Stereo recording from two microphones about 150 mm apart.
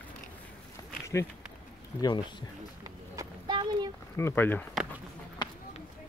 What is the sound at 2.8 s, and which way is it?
Run, 25° right (ahead or behind).